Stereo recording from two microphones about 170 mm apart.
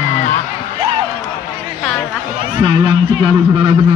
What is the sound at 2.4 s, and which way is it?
A man's voice, 30° right (ahead or behind).